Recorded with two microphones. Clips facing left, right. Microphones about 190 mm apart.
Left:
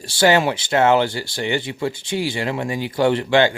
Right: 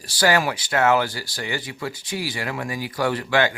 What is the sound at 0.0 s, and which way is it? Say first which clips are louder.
Speech: left 4 dB; 25° left (ahead or behind).